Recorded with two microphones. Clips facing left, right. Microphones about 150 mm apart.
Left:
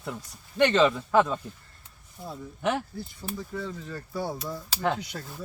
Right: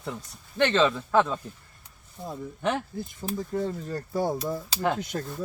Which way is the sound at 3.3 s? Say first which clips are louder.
Right 6 dB; 45° right (ahead or behind).